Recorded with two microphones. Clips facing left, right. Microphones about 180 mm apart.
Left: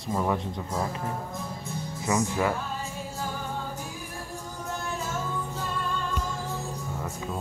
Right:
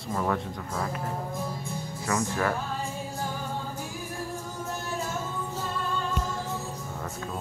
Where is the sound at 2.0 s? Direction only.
15° left (ahead or behind).